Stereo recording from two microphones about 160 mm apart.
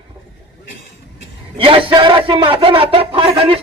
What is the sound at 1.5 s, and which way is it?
A man's voice, 30° right (ahead or behind).